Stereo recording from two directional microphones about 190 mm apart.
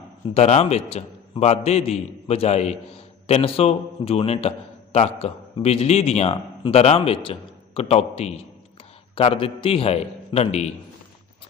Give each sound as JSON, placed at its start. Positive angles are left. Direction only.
{"t": 0.3, "sound": "a man's voice", "side_deg": 35}